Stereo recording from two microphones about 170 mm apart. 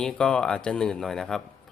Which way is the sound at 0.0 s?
5° left (ahead or behind).